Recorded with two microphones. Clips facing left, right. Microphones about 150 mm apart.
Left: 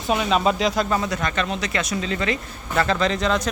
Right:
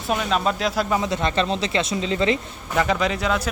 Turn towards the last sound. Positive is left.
turn(degrees=-5)  # may be behind; listen again after turning